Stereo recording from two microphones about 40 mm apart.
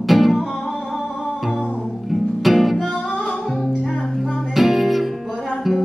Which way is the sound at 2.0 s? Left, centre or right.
Centre.